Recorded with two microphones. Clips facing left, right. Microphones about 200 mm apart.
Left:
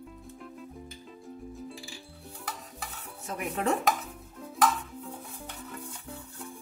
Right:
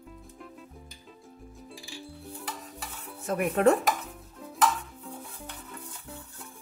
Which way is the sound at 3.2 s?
55° right (ahead or behind).